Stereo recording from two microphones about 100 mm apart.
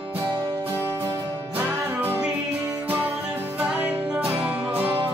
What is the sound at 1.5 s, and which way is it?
Music, 20° right (ahead or behind).